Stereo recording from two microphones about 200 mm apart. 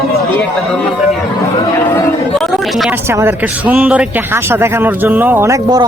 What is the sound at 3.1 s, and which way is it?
A man's voice, 10° right (ahead or behind).